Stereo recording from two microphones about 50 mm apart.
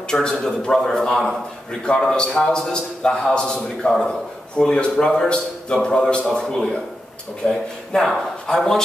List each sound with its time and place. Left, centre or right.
0.1 s a man's voice: centre